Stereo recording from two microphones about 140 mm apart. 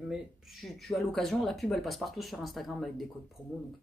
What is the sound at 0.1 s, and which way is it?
Speech, centre (ahead or behind).